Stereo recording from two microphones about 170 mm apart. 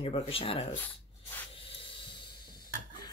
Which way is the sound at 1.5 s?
30° left (ahead or behind).